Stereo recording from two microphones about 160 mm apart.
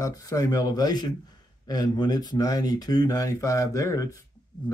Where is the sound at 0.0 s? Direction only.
20° left (ahead or behind).